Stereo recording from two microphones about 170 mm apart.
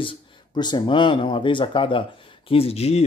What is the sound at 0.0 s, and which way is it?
A man's voice, 30° left (ahead or behind).